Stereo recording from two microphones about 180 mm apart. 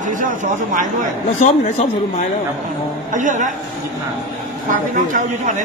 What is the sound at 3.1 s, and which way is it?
Speech, 45° right (ahead or behind).